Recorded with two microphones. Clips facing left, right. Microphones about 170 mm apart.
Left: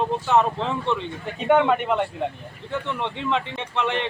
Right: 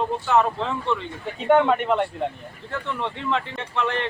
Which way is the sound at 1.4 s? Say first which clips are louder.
Right 1 dB; centre (ahead or behind).